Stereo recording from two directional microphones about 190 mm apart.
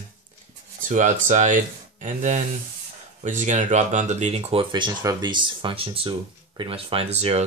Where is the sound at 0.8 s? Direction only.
45° right (ahead or behind).